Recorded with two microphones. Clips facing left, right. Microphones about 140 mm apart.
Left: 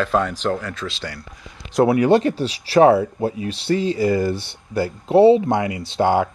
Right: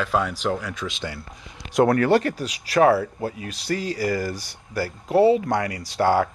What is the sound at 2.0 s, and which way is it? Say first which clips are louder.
Speech: left 4 dB; 20° left (ahead or behind).